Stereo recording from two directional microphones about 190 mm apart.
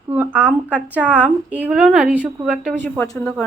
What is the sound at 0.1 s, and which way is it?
A woman's voice, 10° right (ahead or behind).